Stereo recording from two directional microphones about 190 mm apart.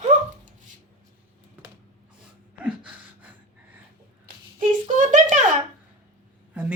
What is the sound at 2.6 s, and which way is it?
Gasp, 5° right (ahead or behind).